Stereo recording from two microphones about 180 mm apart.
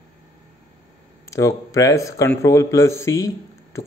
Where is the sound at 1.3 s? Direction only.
15° left (ahead or behind).